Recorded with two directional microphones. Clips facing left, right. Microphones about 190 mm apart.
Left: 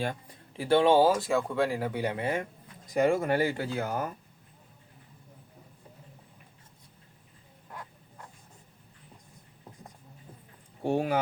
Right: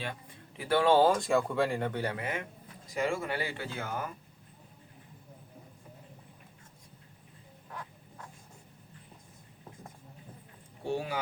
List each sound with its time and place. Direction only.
0.0 s speech: 35° left (ahead or behind)
0.9 s speech: 5° left (ahead or behind)
2.1 s speech: 30° left (ahead or behind)
2.9 s speech: 45° left (ahead or behind)
10.8 s speech: 60° left (ahead or behind)